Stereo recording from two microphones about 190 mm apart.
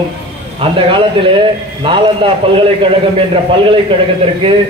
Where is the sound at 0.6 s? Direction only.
25° right (ahead or behind).